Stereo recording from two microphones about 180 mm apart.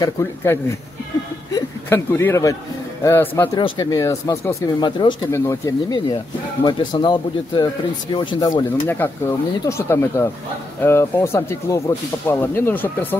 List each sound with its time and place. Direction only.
0.0 s speech: 15° left (ahead or behind)
3.5 s speech: 25° left (ahead or behind)
8.8 s speech: 10° left (ahead or behind)